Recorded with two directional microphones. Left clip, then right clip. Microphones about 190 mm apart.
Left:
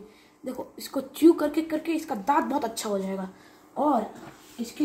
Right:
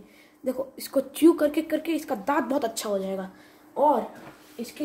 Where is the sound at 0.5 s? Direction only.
20° right (ahead or behind).